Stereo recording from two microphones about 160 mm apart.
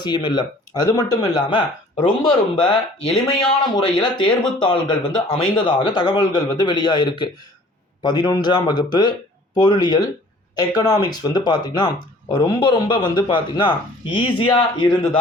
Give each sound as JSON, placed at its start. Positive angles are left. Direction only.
{"t": 0.0, "sound": "speech", "side_deg": 30}